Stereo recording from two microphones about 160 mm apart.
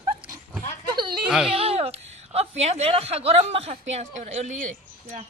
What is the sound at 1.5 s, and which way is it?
A woman's voice, 35° right (ahead or behind).